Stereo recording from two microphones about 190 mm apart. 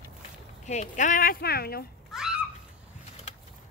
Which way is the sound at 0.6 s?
40° left (ahead or behind).